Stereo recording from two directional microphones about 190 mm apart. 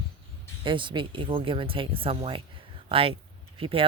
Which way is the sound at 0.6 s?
25° right (ahead or behind).